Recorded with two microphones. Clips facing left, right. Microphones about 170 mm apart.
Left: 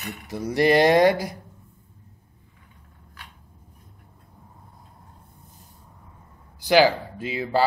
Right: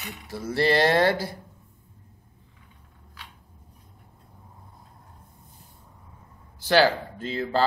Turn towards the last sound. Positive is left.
turn(degrees=10)  # may be behind; listen again after turning